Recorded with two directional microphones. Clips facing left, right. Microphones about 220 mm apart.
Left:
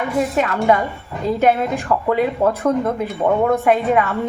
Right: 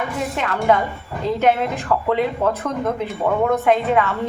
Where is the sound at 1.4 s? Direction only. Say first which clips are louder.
Left 2 dB; 10° left (ahead or behind).